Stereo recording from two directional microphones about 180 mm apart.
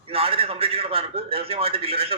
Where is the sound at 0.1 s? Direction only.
30° right (ahead or behind).